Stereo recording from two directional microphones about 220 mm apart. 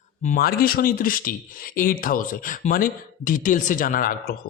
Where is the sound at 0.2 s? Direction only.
40° left (ahead or behind).